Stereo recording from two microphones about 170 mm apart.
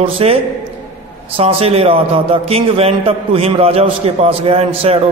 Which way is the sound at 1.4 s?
35° right (ahead or behind).